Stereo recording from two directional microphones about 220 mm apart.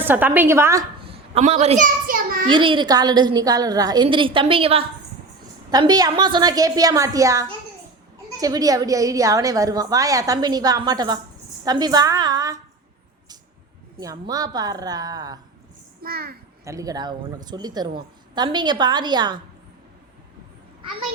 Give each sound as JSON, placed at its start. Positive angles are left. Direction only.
{"t": 0.0, "sound": "a woman's voice", "side_deg": -10}
{"t": 1.0, "sound": "a sound", "side_deg": -25}
{"t": 2.5, "sound": "a woman's voice", "side_deg": -20}
{"t": 13.9, "sound": "a woman's voice", "side_deg": -15}
{"t": 16.0, "sound": "a child's voice", "side_deg": -45}
{"t": 16.6, "sound": "a woman's voice", "side_deg": -15}